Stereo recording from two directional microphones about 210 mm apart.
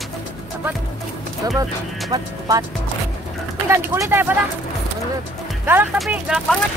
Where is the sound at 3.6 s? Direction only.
15° right (ahead or behind).